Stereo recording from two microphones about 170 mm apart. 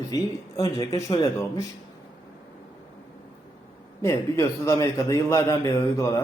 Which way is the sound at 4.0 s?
15° left (ahead or behind).